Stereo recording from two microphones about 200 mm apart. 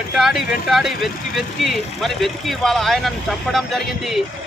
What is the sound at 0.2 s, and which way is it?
Speech, centre (ahead or behind).